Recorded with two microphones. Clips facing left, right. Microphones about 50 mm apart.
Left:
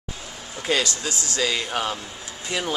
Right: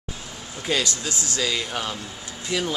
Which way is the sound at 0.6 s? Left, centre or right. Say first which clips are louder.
Left 2 dB; centre.